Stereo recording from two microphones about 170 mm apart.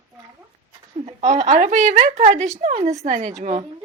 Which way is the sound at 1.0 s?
40° right (ahead or behind).